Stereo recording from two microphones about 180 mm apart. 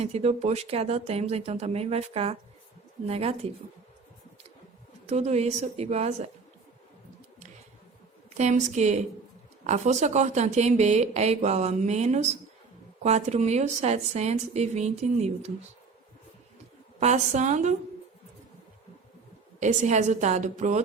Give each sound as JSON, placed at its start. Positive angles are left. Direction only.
{"t": 0.0, "sound": "a woman's voice", "side_deg": -35}
{"t": 5.0, "sound": "a woman's voice", "side_deg": -40}
{"t": 8.4, "sound": "a woman's voice", "side_deg": -40}
{"t": 17.0, "sound": "a woman's voice", "side_deg": -40}
{"t": 19.5, "sound": "a woman's voice", "side_deg": -40}